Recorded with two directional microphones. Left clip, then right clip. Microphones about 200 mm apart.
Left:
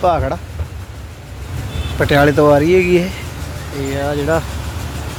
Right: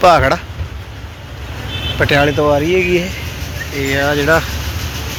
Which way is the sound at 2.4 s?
30° left (ahead or behind).